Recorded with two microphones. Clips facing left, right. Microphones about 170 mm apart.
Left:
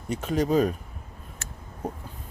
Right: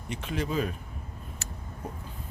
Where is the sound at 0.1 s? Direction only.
40° left (ahead or behind).